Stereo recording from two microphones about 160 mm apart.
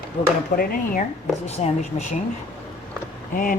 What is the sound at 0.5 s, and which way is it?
Speech, 70° left (ahead or behind).